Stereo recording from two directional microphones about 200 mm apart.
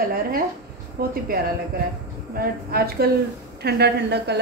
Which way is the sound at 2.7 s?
50° right (ahead or behind).